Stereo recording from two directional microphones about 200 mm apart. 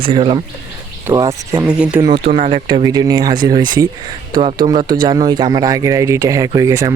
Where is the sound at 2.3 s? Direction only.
35° right (ahead or behind).